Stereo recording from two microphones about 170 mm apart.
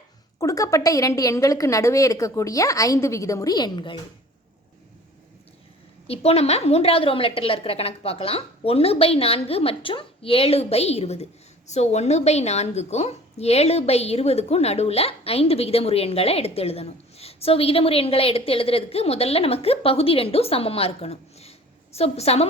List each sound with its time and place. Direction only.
0.3 s a woman's voice: 20° left (ahead or behind)
6.1 s a woman's voice: 35° left (ahead or behind)